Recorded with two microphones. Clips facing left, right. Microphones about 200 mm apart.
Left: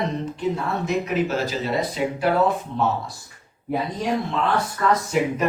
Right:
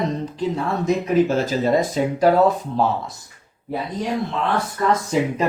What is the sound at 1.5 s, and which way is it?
Speech, 45° right (ahead or behind).